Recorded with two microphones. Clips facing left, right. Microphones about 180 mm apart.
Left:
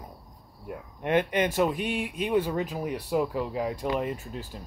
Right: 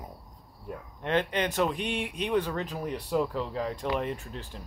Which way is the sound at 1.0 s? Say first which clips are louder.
Left 3 dB; 15° left (ahead or behind).